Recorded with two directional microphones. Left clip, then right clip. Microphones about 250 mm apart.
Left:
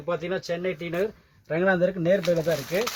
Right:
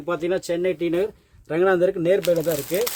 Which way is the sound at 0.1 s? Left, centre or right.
Right.